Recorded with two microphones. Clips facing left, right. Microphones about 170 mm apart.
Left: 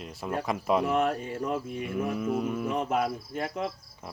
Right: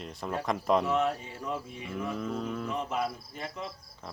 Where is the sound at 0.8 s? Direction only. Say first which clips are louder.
Left 2 dB; 55° left (ahead or behind).